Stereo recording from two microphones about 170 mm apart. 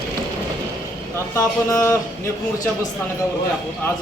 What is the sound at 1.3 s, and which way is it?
Speech, 15° left (ahead or behind).